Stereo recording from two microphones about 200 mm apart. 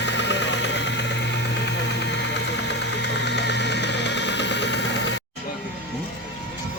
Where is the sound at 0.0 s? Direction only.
60° left (ahead or behind).